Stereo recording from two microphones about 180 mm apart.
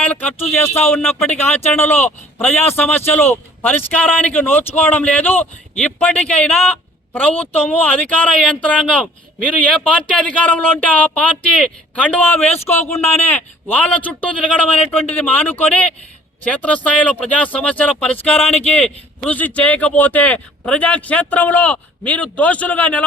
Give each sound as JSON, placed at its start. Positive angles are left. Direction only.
{"t": 0.0, "sound": "speech", "side_deg": 10}
{"t": 18.3, "sound": "speech", "side_deg": 35}
{"t": 18.6, "sound": "speech", "side_deg": 10}